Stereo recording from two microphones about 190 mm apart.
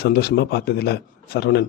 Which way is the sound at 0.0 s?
55° left (ahead or behind).